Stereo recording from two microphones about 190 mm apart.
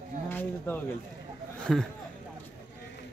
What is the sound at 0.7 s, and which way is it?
Speech, 10° left (ahead or behind).